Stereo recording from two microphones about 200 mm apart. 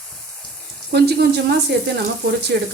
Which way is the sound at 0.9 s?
55° right (ahead or behind).